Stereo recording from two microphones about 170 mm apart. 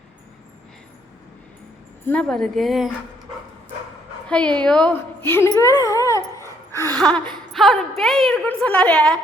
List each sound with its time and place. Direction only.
2.0 s a woman's voice: 5° left (ahead or behind)
4.3 s a woman's voice: 5° left (ahead or behind)
5.5 s a sound: 20° left (ahead or behind)
6.7 s gasp: 15° left (ahead or behind)
7.0 s a woman's voice: 5° left (ahead or behind)